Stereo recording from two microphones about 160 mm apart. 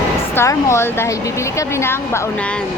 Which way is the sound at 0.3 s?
15° left (ahead or behind).